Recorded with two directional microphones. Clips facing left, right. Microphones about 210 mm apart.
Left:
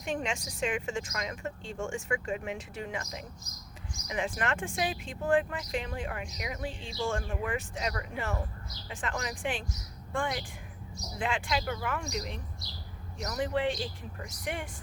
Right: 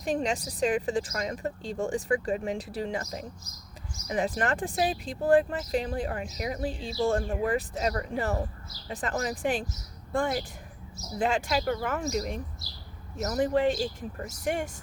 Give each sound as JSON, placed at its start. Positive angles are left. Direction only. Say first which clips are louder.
{"t": 0.0, "sound": "a woman's voice", "louder": "right 5 dB", "side_deg": -35}